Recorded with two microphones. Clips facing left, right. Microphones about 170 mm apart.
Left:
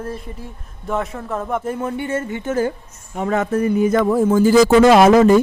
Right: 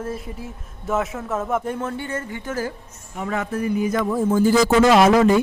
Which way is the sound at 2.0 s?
25° left (ahead or behind).